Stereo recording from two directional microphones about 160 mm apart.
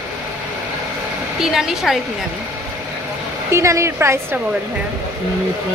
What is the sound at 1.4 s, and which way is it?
Speech, centre (ahead or behind).